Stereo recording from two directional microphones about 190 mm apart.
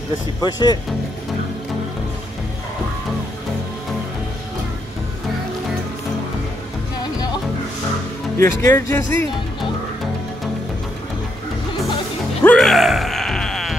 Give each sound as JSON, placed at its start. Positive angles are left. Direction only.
{"t": 0.4, "sound": "speech", "side_deg": 20}
{"t": 8.4, "sound": "speech", "side_deg": 15}
{"t": 12.4, "sound": "groan", "side_deg": 0}